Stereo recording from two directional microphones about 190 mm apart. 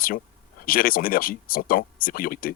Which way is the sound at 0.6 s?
50° left (ahead or behind).